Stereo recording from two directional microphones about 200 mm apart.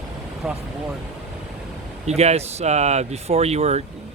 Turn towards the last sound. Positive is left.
turn(degrees=-30)  # may be behind; listen again after turning